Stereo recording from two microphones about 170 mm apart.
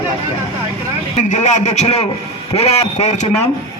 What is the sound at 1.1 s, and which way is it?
A man's voice, 45° left (ahead or behind).